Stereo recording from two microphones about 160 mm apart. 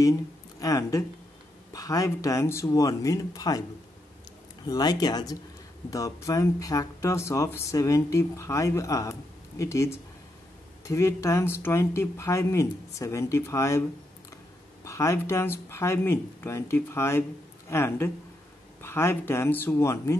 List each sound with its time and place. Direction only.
0.6 s speech: 20° left (ahead or behind)
4.6 s speech: 25° left (ahead or behind)
14.9 s speech: 20° left (ahead or behind)